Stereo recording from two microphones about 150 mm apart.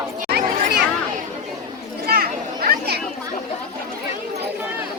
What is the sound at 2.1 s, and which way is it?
Children playing, 90° right.